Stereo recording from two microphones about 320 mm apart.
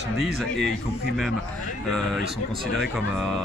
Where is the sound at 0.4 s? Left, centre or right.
Centre.